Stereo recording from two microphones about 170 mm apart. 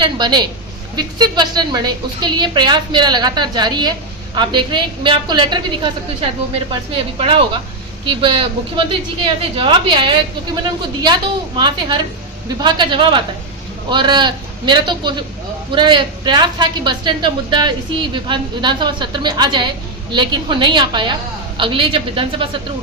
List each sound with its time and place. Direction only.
0.0 s a man's voice: 25° right (ahead or behind)
6.9 s a woman's voice: 30° right (ahead or behind)